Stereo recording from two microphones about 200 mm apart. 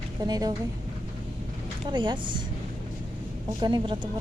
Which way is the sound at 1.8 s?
25° right (ahead or behind).